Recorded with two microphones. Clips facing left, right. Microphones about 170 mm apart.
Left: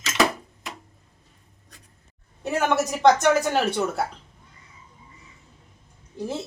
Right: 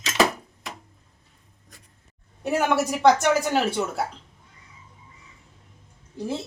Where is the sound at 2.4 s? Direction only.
10° right (ahead or behind).